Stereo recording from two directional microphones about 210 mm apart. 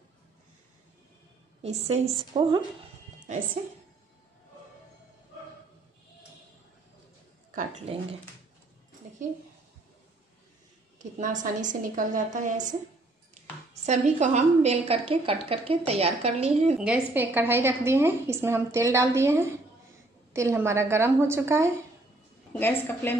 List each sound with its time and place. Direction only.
1.6 s a woman's voice: 30° right (ahead or behind)
7.5 s a woman's voice: 30° right (ahead or behind)
9.0 s a sound: 35° right (ahead or behind)
11.0 s a woman's voice: 35° right (ahead or behind)
13.8 s a woman's voice: 35° right (ahead or behind)
16.8 s a woman's voice: 5° right (ahead or behind)
22.5 s a woman's voice: 10° left (ahead or behind)